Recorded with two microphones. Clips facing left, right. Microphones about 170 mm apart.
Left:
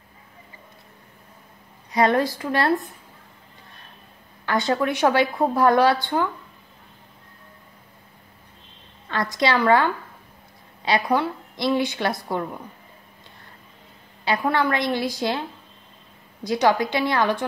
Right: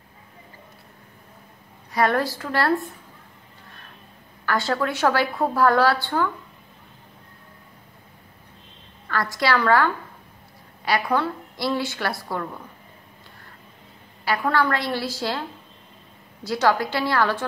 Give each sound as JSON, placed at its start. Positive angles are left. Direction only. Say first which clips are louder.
{"t": 1.9, "sound": "a woman's voice", "louder": "left 2 dB", "side_deg": 20}
{"t": 4.5, "sound": "a woman's voice", "louder": "left 2 dB", "side_deg": 20}
{"t": 9.1, "sound": "a woman's voice", "louder": "left 1 dB", "side_deg": 20}
{"t": 10.9, "sound": "a woman's voice", "louder": "left 1 dB", "side_deg": 15}
{"t": 14.2, "sound": "a woman's voice", "louder": "even", "side_deg": 20}
{"t": 16.4, "sound": "a woman's voice", "louder": "left 1 dB", "side_deg": 15}